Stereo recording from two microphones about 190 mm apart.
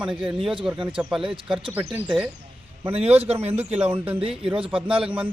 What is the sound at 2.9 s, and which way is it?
Speech, 30° right (ahead or behind).